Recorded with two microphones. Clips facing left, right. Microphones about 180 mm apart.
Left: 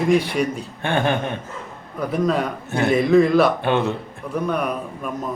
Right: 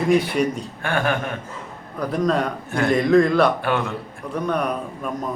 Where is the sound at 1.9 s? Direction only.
5° left (ahead or behind).